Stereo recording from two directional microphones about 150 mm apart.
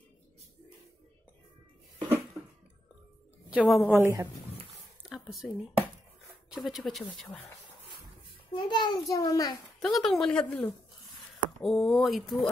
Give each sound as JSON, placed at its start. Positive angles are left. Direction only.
{"t": 3.4, "sound": "a woman's voice", "side_deg": -5}
{"t": 3.9, "sound": "a woman's voice", "side_deg": -15}
{"t": 5.0, "sound": "a sound", "side_deg": 0}
{"t": 6.5, "sound": "speech", "side_deg": 0}
{"t": 8.6, "sound": "a child's voice", "side_deg": 30}
{"t": 9.8, "sound": "speech", "side_deg": 0}